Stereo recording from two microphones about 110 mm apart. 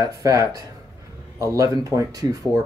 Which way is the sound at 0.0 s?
30° right (ahead or behind).